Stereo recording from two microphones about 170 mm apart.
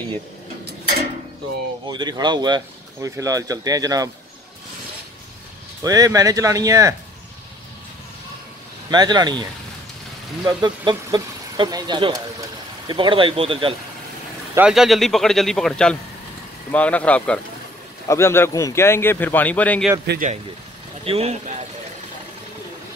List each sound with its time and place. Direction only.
1.9 s speech: 25° right (ahead or behind)
5.9 s speech: 20° right (ahead or behind)
8.9 s speech: 25° right (ahead or behind)
10.4 s speech: 25° right (ahead or behind)
14.5 s a man's voice: 5° right (ahead or behind)
21.0 s speech: 35° right (ahead or behind)